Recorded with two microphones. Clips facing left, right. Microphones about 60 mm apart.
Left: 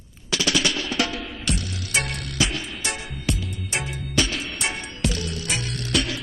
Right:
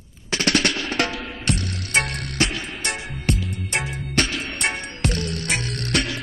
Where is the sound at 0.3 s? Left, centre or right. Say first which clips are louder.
Right 2 dB; right.